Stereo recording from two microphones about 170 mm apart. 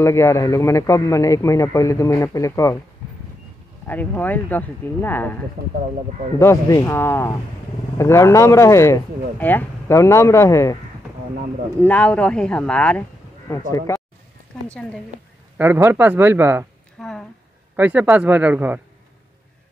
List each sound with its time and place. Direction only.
0.0 s speech: 15° left (ahead or behind)
3.8 s speech: 10° left (ahead or behind)
6.4 s speech: 15° left (ahead or behind)
11.8 s speech: 5° left (ahead or behind)
13.5 s speech: 20° left (ahead or behind)
15.5 s speech: 10° right (ahead or behind)
17.0 s speech: centre (ahead or behind)